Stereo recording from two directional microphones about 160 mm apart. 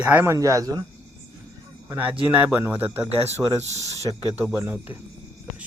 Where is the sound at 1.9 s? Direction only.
10° right (ahead or behind).